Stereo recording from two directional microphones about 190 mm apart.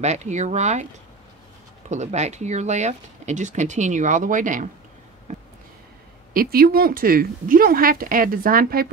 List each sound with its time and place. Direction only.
0.0 s speech: 35° right (ahead or behind)
1.9 s speech: 35° right (ahead or behind)
5.3 s a sound: 40° right (ahead or behind)
6.3 s speech: 50° right (ahead or behind)